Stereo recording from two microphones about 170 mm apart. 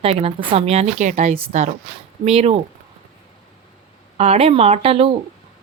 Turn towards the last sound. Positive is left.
turn(degrees=-35)  # may be behind; listen again after turning